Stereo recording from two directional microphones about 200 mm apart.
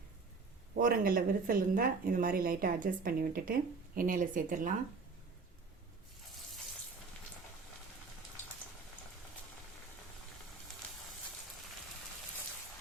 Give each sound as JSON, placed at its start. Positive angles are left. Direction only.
{"t": 0.8, "sound": "speech", "side_deg": -45}